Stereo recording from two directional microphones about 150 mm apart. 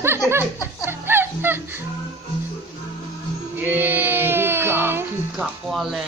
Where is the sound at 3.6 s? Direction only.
10° right (ahead or behind).